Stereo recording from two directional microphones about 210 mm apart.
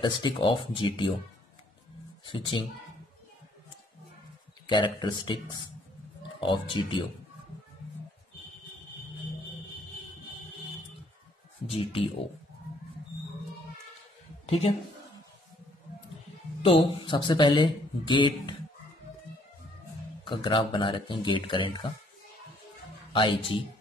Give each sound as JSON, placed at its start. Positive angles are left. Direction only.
{"t": 0.0, "sound": "speech", "side_deg": 20}
{"t": 2.2, "sound": "speech", "side_deg": 25}
{"t": 4.6, "sound": "speech", "side_deg": 20}
{"t": 6.4, "sound": "speech", "side_deg": 20}
{"t": 11.6, "sound": "speech", "side_deg": 25}
{"t": 14.7, "sound": "speech", "side_deg": 25}
{"t": 16.6, "sound": "speech", "side_deg": 25}
{"t": 20.2, "sound": "speech", "side_deg": 25}
{"t": 23.1, "sound": "speech", "side_deg": 20}